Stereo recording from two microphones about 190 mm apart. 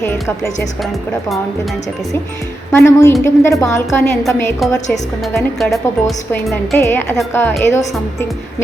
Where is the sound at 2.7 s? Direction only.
15° left (ahead or behind).